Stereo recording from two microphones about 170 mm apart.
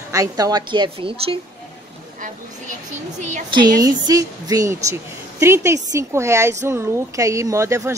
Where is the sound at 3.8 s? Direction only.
20° right (ahead or behind).